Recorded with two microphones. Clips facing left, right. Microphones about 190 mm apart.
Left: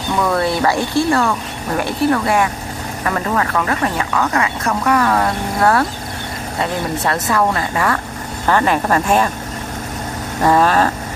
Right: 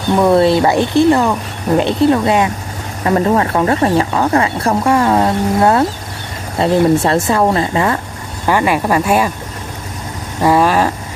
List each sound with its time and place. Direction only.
0.2 s speech: 25° right (ahead or behind)
8.5 s speech: 10° right (ahead or behind)
10.4 s speech: 10° right (ahead or behind)